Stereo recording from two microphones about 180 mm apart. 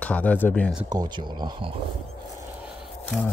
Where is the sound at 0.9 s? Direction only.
25° right (ahead or behind).